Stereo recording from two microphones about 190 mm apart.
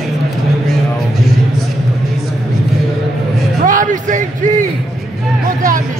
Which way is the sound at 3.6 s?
45° right (ahead or behind).